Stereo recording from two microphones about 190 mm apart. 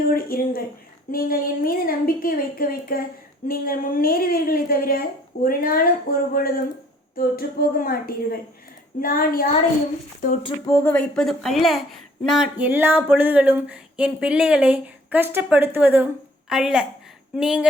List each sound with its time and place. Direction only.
0.1 s a woman's voice: 50° left (ahead or behind)
10.4 s a woman's voice: 15° left (ahead or behind); by 17.7 s 5° right (ahead or behind)